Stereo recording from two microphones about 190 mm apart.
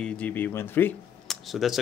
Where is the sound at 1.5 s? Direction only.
Centre (ahead or behind).